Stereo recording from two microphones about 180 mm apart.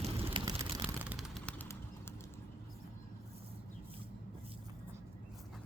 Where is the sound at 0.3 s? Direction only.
25° right (ahead or behind).